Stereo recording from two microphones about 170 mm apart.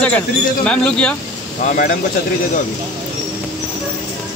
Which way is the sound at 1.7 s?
55° left (ahead or behind).